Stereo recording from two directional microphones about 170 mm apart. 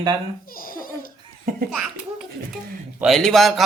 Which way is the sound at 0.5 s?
55° left (ahead or behind).